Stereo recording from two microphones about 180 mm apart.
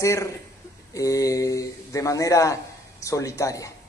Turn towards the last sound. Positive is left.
turn(degrees=15)  # may be behind; listen again after turning